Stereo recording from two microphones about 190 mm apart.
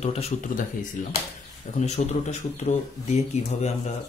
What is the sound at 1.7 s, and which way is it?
Speech, 35° left (ahead or behind).